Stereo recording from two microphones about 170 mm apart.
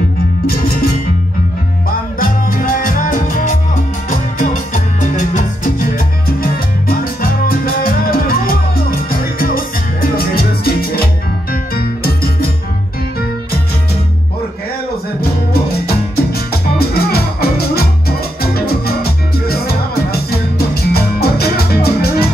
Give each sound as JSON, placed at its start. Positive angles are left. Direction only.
{"t": 0.5, "sound": "music", "side_deg": 60}
{"t": 2.1, "sound": "music", "side_deg": 55}
{"t": 10.0, "sound": "music", "side_deg": 60}
{"t": 16.2, "sound": "music", "side_deg": 65}